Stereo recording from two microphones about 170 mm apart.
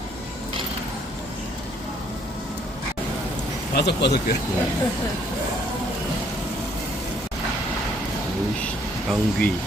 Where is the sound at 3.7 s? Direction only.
75° left (ahead or behind).